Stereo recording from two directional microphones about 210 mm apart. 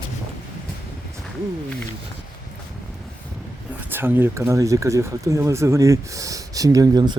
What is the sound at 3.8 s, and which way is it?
A man's voice, 10° right (ahead or behind).